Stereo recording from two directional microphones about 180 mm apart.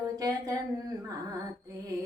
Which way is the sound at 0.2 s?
20° right (ahead or behind).